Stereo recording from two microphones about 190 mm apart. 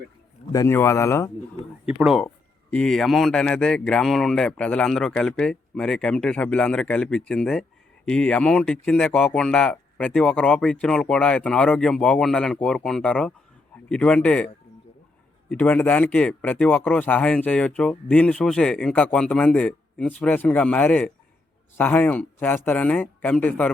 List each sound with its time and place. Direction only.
0.5 s speech: 15° left (ahead or behind)
1.9 s speech: 5° right (ahead or behind)
2.2 s speech: 10° left (ahead or behind)